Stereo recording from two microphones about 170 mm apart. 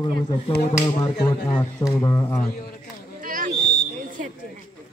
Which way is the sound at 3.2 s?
55° right (ahead or behind).